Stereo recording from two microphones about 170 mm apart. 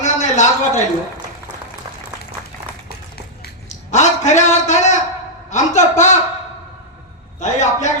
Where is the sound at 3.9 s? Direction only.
45° left (ahead or behind).